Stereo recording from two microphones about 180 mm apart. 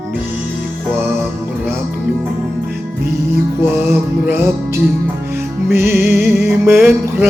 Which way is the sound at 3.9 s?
15° right (ahead or behind).